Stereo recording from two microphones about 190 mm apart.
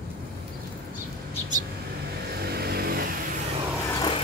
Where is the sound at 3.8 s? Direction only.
15° left (ahead or behind).